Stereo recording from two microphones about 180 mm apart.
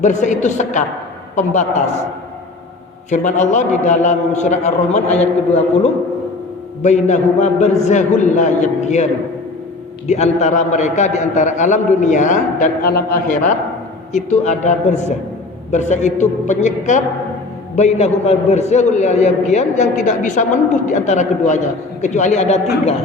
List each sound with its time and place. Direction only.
0.0 s a man's voice: 40° left (ahead or behind)
3.1 s a man's voice: 40° left (ahead or behind)
6.8 s a man's voice: 40° left (ahead or behind)
10.1 s a man's voice: 40° left (ahead or behind)